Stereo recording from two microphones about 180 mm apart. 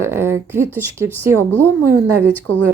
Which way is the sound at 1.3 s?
10° left (ahead or behind).